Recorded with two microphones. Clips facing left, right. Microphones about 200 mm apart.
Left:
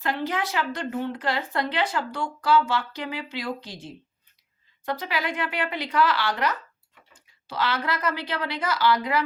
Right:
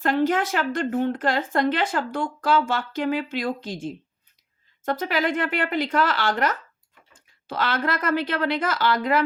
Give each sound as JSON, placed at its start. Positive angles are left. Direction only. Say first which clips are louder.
{"t": 0.0, "sound": "a woman's voice", "louder": "right 6 dB", "side_deg": -50}
{"t": 4.9, "sound": "a woman's voice", "louder": "right 5 dB", "side_deg": -50}